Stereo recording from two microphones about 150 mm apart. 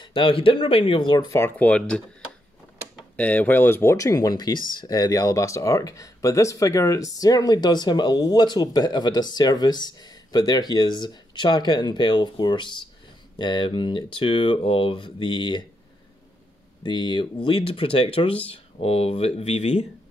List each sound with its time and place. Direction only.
0.0 s speech: 35° left (ahead or behind)
1.3 s speech: 15° left (ahead or behind)
3.2 s speech: 10° left (ahead or behind); by 15.6 s 30° left (ahead or behind)
16.8 s speech: 30° left (ahead or behind)